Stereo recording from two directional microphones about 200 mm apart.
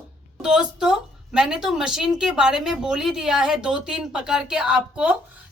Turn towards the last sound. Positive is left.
turn(degrees=-5)  # may be behind; listen again after turning